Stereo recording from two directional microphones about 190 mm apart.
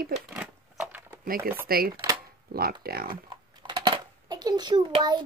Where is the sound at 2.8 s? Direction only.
50° right (ahead or behind).